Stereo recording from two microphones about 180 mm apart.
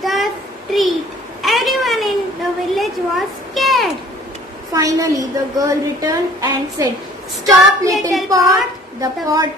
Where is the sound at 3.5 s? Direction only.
Centre (ahead or behind).